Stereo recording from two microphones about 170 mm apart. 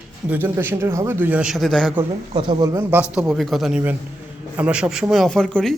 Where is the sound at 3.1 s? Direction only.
5° right (ahead or behind).